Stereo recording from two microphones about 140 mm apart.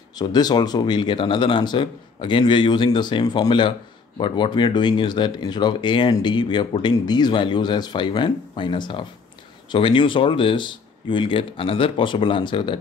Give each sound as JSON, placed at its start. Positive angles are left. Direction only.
{"t": 0.1, "sound": "speech", "side_deg": 30}